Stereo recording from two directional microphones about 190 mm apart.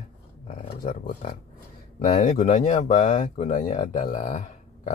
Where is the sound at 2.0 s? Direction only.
40° left (ahead or behind).